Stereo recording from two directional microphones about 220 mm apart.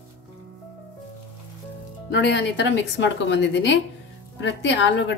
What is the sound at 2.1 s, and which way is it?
A woman's voice, 55° left (ahead or behind).